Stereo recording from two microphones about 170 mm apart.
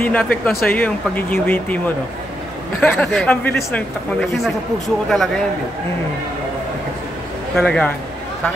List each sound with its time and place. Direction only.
0.0 s speech: 10° left (ahead or behind)
2.8 s a man's voice: 10° left (ahead or behind)
7.5 s a man's voice: 5° left (ahead or behind)